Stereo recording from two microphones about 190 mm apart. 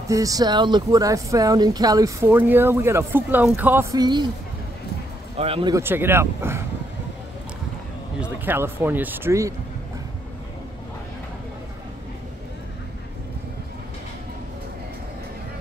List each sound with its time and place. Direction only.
0.1 s speech: 20° right (ahead or behind)
5.4 s speech: 25° right (ahead or behind)
5.8 s speech: 10° right (ahead or behind)
8.2 s speech: 10° right (ahead or behind)